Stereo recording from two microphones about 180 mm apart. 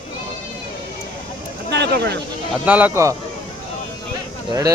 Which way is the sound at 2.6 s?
10° right (ahead or behind).